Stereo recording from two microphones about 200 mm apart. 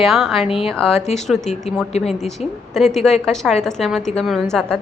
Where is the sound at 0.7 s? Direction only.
5° left (ahead or behind).